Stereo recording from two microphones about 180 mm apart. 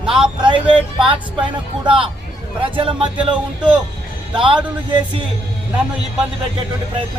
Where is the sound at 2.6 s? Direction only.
30° right (ahead or behind).